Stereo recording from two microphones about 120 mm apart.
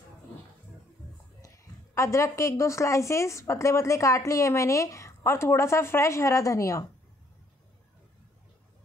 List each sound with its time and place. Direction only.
1.4 s a woman's voice: 25° left (ahead or behind)